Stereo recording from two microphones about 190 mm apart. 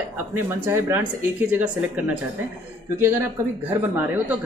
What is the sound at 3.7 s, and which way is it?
Speech, 10° right (ahead or behind).